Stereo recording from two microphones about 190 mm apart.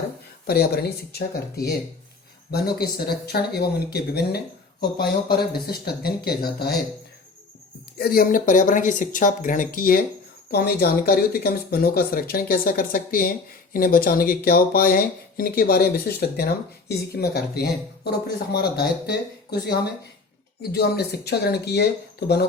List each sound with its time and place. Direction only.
0.4 s speech: 55° left (ahead or behind)
7.9 s speech: 55° left (ahead or behind)